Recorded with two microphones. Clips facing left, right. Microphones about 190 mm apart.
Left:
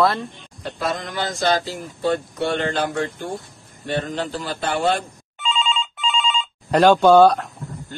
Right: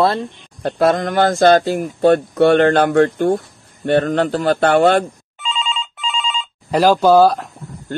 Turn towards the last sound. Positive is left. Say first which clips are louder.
# right 1 dB
turn(degrees=0)  # may be behind; listen again after turning